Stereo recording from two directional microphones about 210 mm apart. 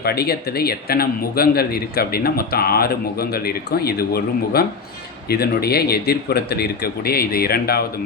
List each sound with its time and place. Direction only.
0.0 s a man's voice: 50° left (ahead or behind)